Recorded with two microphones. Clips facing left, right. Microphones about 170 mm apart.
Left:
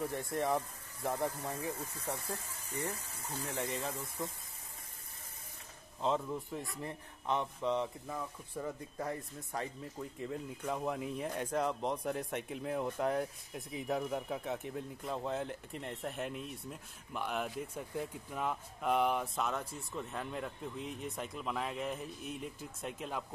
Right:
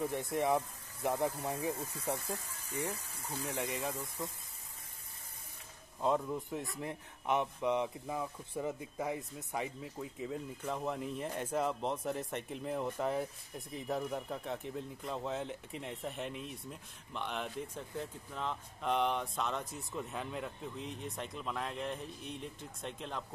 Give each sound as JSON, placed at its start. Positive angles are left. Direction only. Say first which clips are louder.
{"t": 0.3, "sound": "speech", "louder": "right 2 dB", "side_deg": -20}
{"t": 5.9, "sound": "speech", "louder": "right 1 dB", "side_deg": -5}
{"t": 6.9, "sound": "speech", "louder": "right 2 dB", "side_deg": -15}